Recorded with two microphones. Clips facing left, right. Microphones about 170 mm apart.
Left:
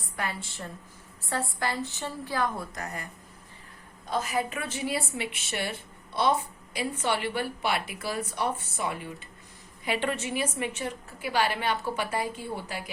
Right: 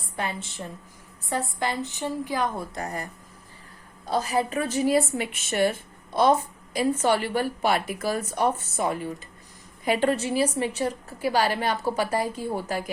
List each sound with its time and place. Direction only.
0.2 s a woman's voice: 20° right (ahead or behind); by 12.9 s 45° right (ahead or behind)